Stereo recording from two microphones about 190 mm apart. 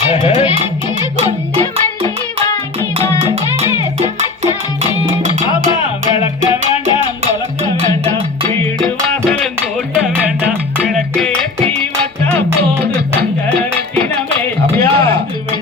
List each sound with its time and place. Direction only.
0.1 s speech: 30° left (ahead or behind)
5.0 s music: 40° right (ahead or behind)
10.8 s music: 5° left (ahead or behind)
14.8 s music: 55° right (ahead or behind)